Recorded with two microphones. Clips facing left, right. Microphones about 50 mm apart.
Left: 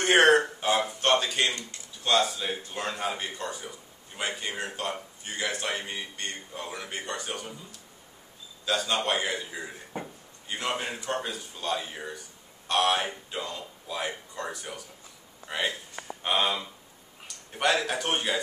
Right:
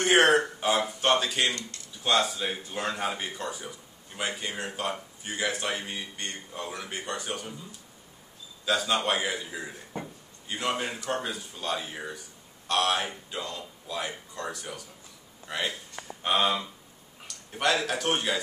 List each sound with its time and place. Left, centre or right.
0.0 s a man's voice: centre
8.6 s speech: centre
9.9 s speech: centre
10.5 s a man's voice: centre